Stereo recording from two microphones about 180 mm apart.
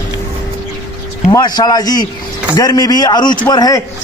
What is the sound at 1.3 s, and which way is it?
Speech, 25° left (ahead or behind).